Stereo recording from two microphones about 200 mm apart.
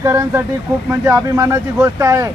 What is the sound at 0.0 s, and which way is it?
Speech, 15° right (ahead or behind).